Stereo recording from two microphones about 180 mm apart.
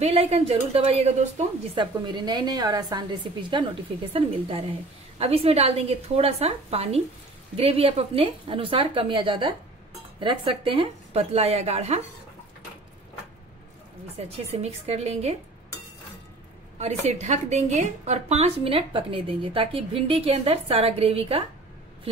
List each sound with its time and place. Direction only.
0.0 s a woman's voice: 35° right (ahead or behind)
1.8 s a woman's voice: 25° right (ahead or behind)
14.3 s a woman's voice: 35° right (ahead or behind)
16.7 s a woman's voice: 40° right (ahead or behind)